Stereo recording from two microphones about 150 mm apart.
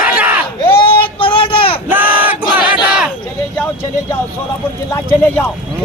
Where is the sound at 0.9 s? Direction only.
35° left (ahead or behind).